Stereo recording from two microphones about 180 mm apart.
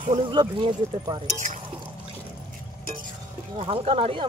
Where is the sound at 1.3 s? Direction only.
45° right (ahead or behind).